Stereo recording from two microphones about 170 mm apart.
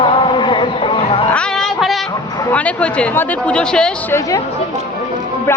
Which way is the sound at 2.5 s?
10° left (ahead or behind).